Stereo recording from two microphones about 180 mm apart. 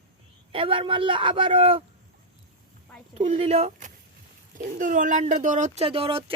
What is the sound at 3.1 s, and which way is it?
Speech, 35° right (ahead or behind).